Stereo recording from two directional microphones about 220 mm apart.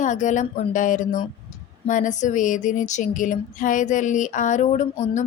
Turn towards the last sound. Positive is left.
turn(degrees=30)  # may be behind; listen again after turning